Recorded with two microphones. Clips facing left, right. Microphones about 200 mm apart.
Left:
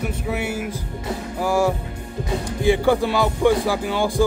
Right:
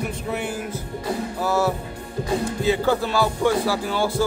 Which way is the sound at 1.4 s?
15° left (ahead or behind).